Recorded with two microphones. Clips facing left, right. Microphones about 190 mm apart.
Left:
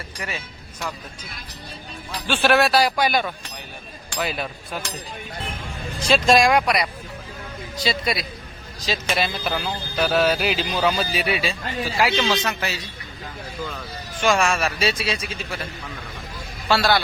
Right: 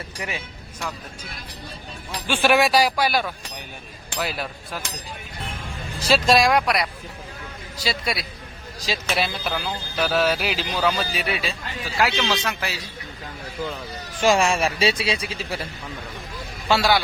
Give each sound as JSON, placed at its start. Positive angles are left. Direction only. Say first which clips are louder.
{"t": 0.2, "sound": "speech", "louder": "even", "side_deg": -15}
{"t": 2.2, "sound": "speech", "louder": "even", "side_deg": -10}
{"t": 6.0, "sound": "speech", "louder": "left 1 dB", "side_deg": -5}
{"t": 14.2, "sound": "a man's voice", "louder": "right 1 dB", "side_deg": -30}
{"t": 16.6, "sound": "speech", "louder": "even", "side_deg": -15}